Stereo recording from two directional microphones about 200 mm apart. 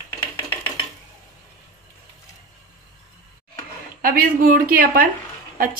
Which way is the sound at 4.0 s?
45° right (ahead or behind).